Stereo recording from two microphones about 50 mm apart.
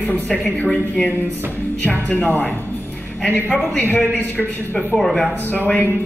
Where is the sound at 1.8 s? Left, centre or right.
Left.